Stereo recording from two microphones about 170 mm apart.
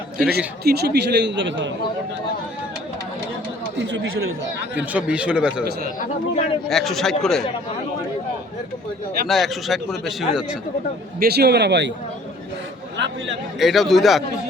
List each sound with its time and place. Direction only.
0.3 s a man's voice: 70° right (ahead or behind); by 1.7 s 90° right
3.8 s speech: 90° right
4.9 s speech: 5° right (ahead or behind)
6.3 s speech: 35° left (ahead or behind)
6.7 s a man's voice: centre (ahead or behind)
9.2 s a man's voice: centre (ahead or behind)
11.2 s a man's voice: 70° right (ahead or behind); by 11.9 s 90° right
13.6 s a man's voice: centre (ahead or behind)